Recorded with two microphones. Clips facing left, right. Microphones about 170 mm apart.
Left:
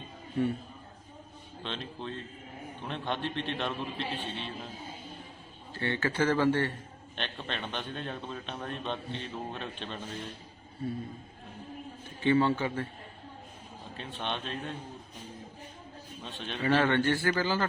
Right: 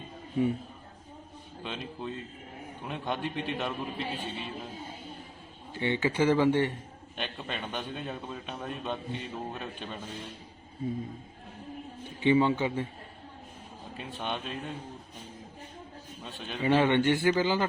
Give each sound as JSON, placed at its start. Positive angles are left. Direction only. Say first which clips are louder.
{"t": 1.6, "sound": "a man's voice", "louder": "right 1 dB", "side_deg": -10}
{"t": 5.7, "sound": "a man's voice", "louder": "right 3 dB", "side_deg": -15}
{"t": 12.2, "sound": "a man's voice", "louder": "right 2 dB", "side_deg": -15}
{"t": 14.2, "sound": "a man's voice", "louder": "even", "side_deg": -5}
{"t": 16.2, "sound": "a man's voice", "louder": "right 1 dB", "side_deg": -5}
{"t": 16.6, "sound": "a man's voice", "louder": "right 2 dB", "side_deg": -15}